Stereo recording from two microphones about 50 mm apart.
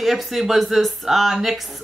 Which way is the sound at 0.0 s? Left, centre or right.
Centre.